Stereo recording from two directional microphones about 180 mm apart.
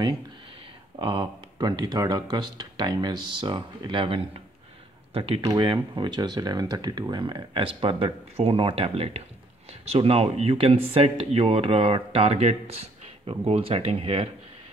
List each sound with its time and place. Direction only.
0.9 s speech: 30° right (ahead or behind)